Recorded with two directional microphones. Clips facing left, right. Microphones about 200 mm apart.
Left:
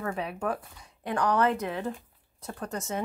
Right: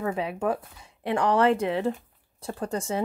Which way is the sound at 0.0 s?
20° right (ahead or behind).